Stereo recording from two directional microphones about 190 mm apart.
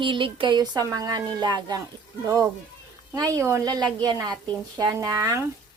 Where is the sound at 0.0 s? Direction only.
25° right (ahead or behind).